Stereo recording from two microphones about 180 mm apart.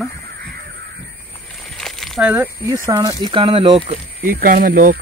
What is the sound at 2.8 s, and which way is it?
Speech, 20° right (ahead or behind).